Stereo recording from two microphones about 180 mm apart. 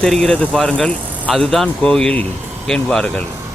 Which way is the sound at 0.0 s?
5° left (ahead or behind).